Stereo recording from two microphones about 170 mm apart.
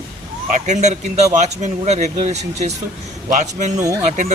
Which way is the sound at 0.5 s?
45° right (ahead or behind).